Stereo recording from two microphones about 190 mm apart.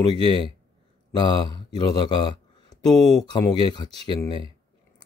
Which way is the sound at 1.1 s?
20° left (ahead or behind).